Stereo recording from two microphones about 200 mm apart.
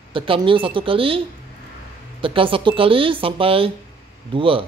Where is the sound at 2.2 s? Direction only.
25° right (ahead or behind).